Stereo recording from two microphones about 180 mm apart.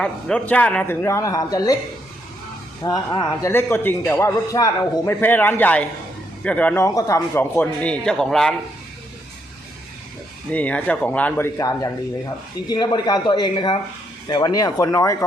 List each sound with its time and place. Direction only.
0.0 s a man's voice: 5° left (ahead or behind)
2.8 s a man's voice: 20° left (ahead or behind); by 8.5 s centre (ahead or behind)
10.5 s a man's voice: 5° left (ahead or behind)